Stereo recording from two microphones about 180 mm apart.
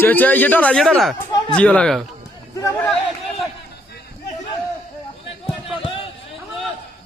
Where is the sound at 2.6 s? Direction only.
15° left (ahead or behind).